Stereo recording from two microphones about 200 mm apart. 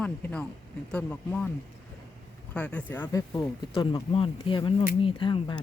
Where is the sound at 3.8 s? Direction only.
25° left (ahead or behind).